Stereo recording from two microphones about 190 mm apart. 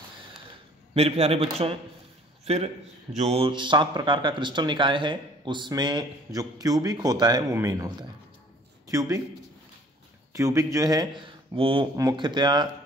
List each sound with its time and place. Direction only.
0.9 s a man's voice: 30° right (ahead or behind)
10.3 s speech: 15° right (ahead or behind)